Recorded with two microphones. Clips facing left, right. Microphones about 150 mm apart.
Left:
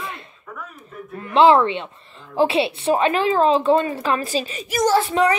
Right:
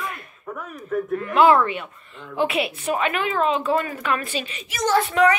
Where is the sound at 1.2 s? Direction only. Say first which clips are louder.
Left 3 dB; 25° left (ahead or behind).